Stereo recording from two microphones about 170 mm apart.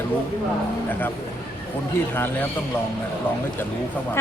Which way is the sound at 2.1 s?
10° left (ahead or behind).